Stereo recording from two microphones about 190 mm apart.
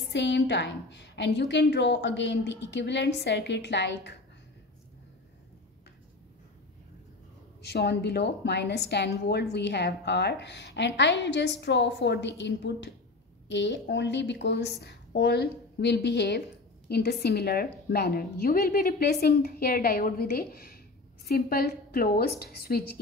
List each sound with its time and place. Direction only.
0.1 s a woman's voice: 65° left (ahead or behind)
7.6 s a woman's voice: 60° left (ahead or behind)